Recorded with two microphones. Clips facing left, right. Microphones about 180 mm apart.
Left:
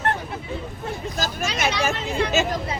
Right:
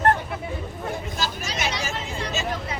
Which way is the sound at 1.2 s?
50° left (ahead or behind).